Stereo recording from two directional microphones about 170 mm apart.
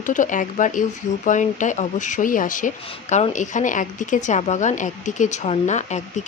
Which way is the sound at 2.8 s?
35° left (ahead or behind).